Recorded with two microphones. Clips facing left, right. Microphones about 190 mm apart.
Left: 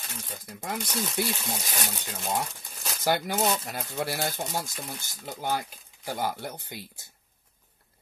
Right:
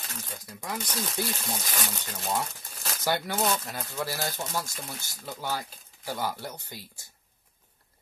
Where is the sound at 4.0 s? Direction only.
55° left (ahead or behind).